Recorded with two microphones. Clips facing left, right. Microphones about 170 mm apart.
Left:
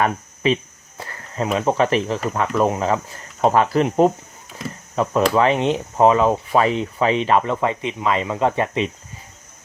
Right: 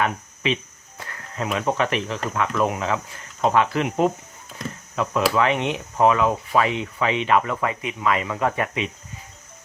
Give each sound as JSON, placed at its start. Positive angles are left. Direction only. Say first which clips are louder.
{"t": 0.0, "sound": "speech", "louder": "left 4 dB", "side_deg": 40}
{"t": 5.3, "sound": "speech", "louder": "left 4 dB", "side_deg": 35}